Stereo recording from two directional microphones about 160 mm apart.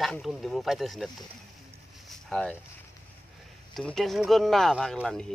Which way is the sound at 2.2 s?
5° left (ahead or behind).